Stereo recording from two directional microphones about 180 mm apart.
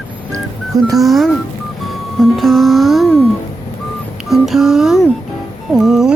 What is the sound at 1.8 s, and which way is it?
Music, centre (ahead or behind).